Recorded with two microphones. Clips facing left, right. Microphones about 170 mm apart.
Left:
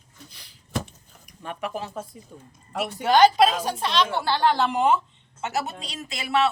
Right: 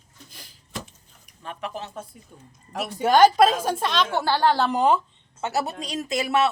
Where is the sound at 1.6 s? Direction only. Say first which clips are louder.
Left 2 dB; 10° left (ahead or behind).